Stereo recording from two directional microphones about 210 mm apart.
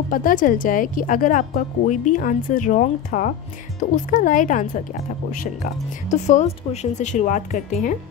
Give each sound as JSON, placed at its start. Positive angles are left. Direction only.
{"t": 0.1, "sound": "speech", "side_deg": 40}